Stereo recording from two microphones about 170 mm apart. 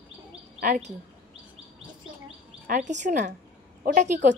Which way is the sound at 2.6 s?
45° right (ahead or behind).